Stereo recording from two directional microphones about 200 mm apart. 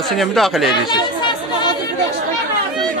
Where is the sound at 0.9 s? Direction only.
20° left (ahead or behind).